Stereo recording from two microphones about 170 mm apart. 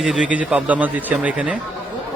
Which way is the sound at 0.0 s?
5° right (ahead or behind).